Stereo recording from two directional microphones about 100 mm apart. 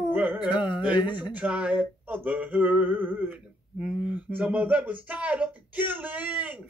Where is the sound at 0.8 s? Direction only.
15° right (ahead or behind).